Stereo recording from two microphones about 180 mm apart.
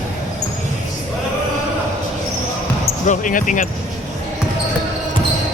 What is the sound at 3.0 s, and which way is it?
Speech, 45° left (ahead or behind).